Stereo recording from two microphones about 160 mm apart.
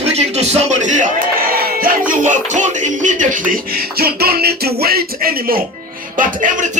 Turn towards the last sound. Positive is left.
turn(degrees=-55)  # may be behind; listen again after turning